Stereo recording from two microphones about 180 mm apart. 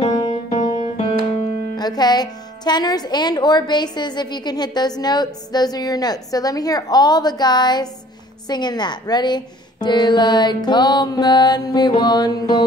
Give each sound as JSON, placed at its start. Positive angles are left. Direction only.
{"t": 0.5, "sound": "music", "side_deg": 40}
{"t": 1.8, "sound": "a woman's voice", "side_deg": 20}